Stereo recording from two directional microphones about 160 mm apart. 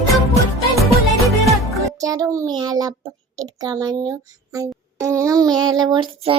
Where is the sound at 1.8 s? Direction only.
20° right (ahead or behind).